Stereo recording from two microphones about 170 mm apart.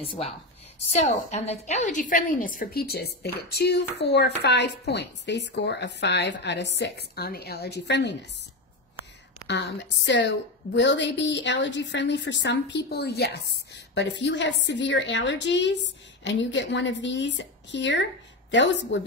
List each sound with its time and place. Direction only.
0.9 s a woman's voice: 40° left (ahead or behind); by 8.2 s 90° left
9.5 s speech: 90° left; by 13.3 s 70° left (ahead or behind)
13.9 s speech: 90° left